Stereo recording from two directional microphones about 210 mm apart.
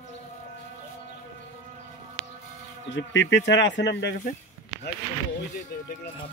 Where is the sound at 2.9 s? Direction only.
60° left (ahead or behind).